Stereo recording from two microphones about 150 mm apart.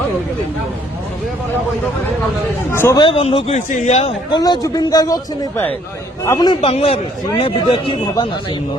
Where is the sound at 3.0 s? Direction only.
40° left (ahead or behind).